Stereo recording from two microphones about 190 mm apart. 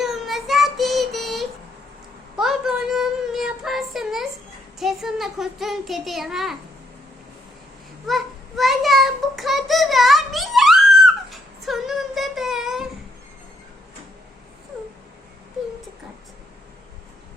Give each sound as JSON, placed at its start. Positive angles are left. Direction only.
{"t": 0.0, "sound": "child singing", "side_deg": 0}
{"t": 4.8, "sound": "a child's voice", "side_deg": 0}
{"t": 8.0, "sound": "child singing", "side_deg": 0}